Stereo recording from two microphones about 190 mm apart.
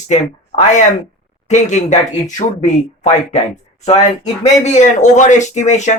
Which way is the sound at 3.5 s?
35° left (ahead or behind).